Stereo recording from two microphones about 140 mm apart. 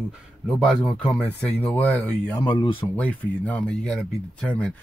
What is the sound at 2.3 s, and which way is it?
Speech, 30° left (ahead or behind).